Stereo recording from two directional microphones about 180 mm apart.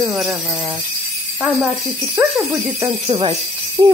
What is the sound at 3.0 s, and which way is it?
Speech, 30° right (ahead or behind).